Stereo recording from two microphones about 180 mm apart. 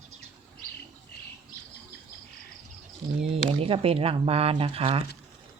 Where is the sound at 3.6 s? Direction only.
30° right (ahead or behind).